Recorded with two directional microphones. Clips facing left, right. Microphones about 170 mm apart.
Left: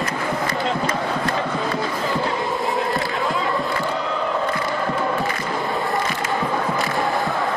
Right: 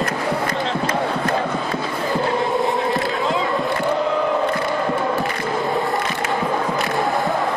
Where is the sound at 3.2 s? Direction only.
20° right (ahead or behind).